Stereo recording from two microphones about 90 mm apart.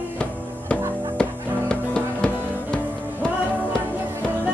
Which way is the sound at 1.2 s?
10° left (ahead or behind).